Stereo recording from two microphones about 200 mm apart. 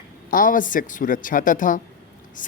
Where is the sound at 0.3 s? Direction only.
45° left (ahead or behind).